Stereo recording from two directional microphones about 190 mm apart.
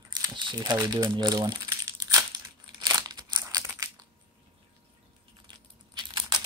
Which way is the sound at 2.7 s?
20° right (ahead or behind).